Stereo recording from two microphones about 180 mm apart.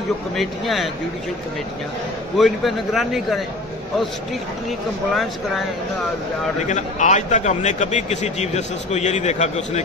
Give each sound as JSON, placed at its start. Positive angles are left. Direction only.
{"t": 0.4, "sound": "a man's voice", "side_deg": 0}
{"t": 2.3, "sound": "a man's voice", "side_deg": 0}
{"t": 6.7, "sound": "a man's voice", "side_deg": 40}